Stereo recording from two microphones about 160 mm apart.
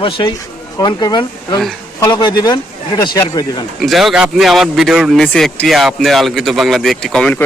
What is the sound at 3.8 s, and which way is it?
Speech, centre (ahead or behind).